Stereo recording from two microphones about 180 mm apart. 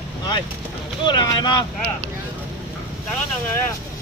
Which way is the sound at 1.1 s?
25° left (ahead or behind).